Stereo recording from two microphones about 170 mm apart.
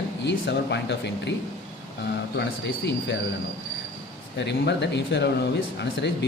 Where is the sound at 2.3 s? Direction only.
90° left.